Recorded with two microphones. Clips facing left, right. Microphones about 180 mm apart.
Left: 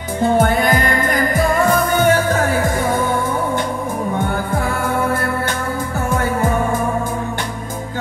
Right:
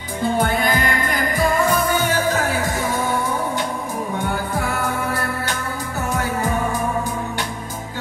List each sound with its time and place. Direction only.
1.3 s music: 50° left (ahead or behind)